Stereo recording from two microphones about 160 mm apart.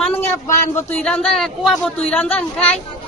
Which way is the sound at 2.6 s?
40° left (ahead or behind).